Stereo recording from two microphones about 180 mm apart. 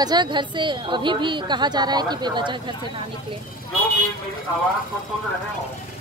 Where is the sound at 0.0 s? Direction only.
25° right (ahead or behind).